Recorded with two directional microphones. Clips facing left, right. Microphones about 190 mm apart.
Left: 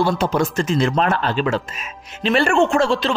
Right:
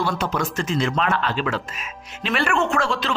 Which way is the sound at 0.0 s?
30° left (ahead or behind).